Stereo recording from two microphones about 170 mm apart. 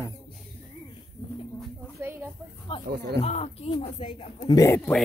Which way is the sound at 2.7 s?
30° left (ahead or behind).